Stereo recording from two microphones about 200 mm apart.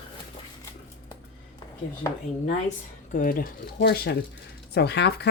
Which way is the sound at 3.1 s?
45° left (ahead or behind).